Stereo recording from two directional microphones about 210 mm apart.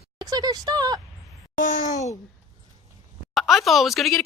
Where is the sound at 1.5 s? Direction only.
40° left (ahead or behind).